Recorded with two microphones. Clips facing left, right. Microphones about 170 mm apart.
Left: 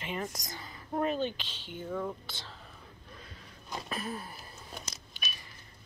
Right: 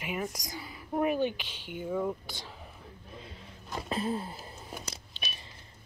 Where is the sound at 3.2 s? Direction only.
25° right (ahead or behind).